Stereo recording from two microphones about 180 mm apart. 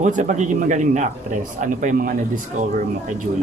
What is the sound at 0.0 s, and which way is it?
A man's voice, 45° right (ahead or behind).